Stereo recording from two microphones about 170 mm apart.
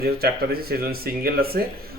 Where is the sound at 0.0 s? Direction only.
65° right (ahead or behind).